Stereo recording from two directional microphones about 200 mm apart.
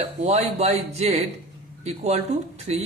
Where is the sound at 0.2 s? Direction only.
30° right (ahead or behind).